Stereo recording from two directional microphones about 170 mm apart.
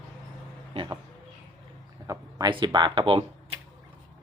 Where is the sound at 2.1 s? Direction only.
20° right (ahead or behind).